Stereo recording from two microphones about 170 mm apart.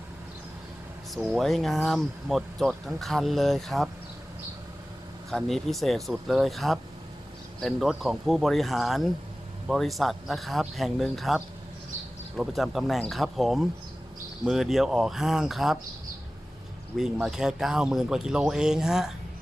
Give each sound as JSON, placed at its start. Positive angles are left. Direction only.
{"t": 1.1, "sound": "speech", "side_deg": -5}
{"t": 5.3, "sound": "speech", "side_deg": 0}
{"t": 17.0, "sound": "speech", "side_deg": -5}